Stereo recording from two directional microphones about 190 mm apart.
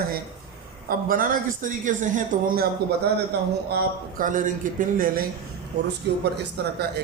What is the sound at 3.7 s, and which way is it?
Speech, 55° right (ahead or behind).